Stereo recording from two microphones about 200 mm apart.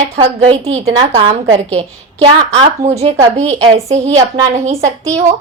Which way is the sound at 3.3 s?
30° right (ahead or behind).